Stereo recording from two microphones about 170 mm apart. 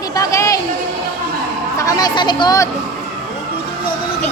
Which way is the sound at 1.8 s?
20° left (ahead or behind).